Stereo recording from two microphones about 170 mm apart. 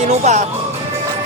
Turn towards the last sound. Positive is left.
turn(degrees=-40)  # may be behind; listen again after turning